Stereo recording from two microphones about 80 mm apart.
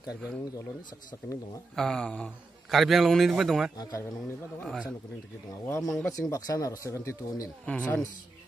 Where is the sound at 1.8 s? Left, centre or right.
Centre.